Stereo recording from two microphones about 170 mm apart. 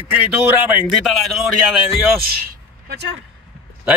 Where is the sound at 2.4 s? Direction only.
65° right (ahead or behind).